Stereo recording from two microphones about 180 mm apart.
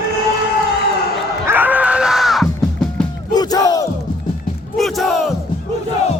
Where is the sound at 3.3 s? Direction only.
20° left (ahead or behind).